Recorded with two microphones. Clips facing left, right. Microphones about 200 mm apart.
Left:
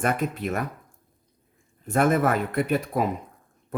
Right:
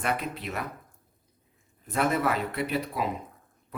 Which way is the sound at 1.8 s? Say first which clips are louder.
Left 5 dB; 50° left (ahead or behind).